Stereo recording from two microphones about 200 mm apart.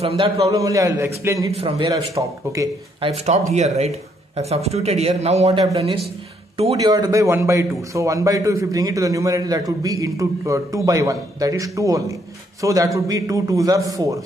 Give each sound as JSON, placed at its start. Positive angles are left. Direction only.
{"t": 0.0, "sound": "a man's voice", "side_deg": -30}
{"t": 0.4, "sound": "a man's voice", "side_deg": -15}
{"t": 3.1, "sound": "a man's voice", "side_deg": -35}